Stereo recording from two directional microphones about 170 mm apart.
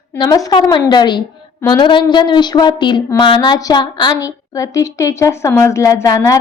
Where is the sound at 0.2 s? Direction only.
20° left (ahead or behind).